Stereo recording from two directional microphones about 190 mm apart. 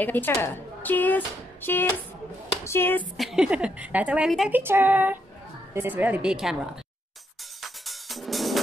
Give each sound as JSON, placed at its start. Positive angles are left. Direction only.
{"t": 0.0, "sound": "speech", "side_deg": 10}
{"t": 3.2, "sound": "a woman's voice", "side_deg": 0}
{"t": 7.6, "sound": "drum", "side_deg": 0}